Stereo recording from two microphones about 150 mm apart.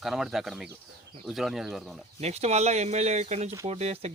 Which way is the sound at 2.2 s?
45° right (ahead or behind).